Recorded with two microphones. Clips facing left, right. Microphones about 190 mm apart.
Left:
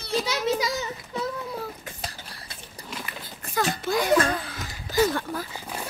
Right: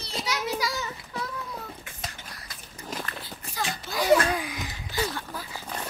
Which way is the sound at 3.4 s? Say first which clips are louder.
Left 7 dB; 50° left (ahead or behind).